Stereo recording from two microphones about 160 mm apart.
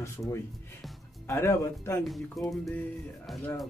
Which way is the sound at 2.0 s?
Centre (ahead or behind).